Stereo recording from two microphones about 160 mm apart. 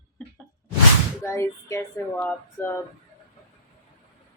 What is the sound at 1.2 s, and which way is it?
Speech, 15° left (ahead or behind).